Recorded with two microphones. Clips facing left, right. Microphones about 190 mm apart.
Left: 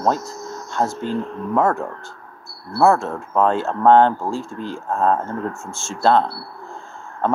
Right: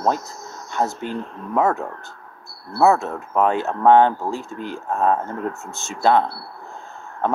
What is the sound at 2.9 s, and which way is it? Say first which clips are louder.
Speech: left 1 dB; 15° right (ahead or behind).